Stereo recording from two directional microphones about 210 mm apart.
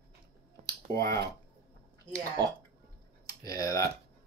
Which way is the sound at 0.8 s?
15° left (ahead or behind).